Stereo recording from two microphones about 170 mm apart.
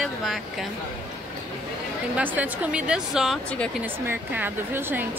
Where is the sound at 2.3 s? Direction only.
10° right (ahead or behind).